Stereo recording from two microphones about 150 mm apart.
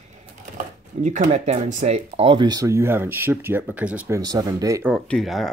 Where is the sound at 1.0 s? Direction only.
55° right (ahead or behind).